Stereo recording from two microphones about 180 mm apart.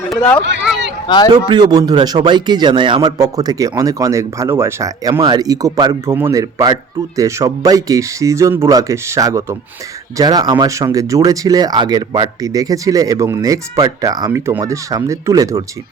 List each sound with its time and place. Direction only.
0.2 s speech: 10° left (ahead or behind)
1.0 s a man's voice: 25° left (ahead or behind)
1.3 s speech: 25° right (ahead or behind)